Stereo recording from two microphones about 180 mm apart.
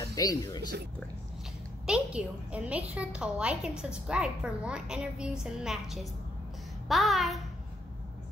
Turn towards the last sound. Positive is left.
turn(degrees=0)  # may be behind; listen again after turning